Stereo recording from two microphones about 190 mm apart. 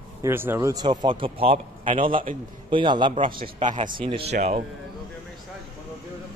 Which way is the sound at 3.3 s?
45° right (ahead or behind).